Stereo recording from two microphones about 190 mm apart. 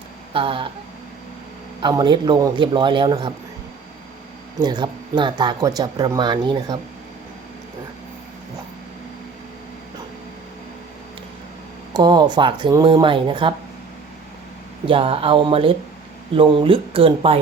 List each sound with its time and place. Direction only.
0.3 s speech: 30° right (ahead or behind)
1.8 s speech: 20° right (ahead or behind)
4.6 s speech: 20° right (ahead or behind)
11.9 s speech: 20° right (ahead or behind)
14.8 s speech: 25° right (ahead or behind)